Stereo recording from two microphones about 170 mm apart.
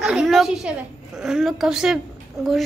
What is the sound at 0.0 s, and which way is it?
A woman's voice, 5° right (ahead or behind).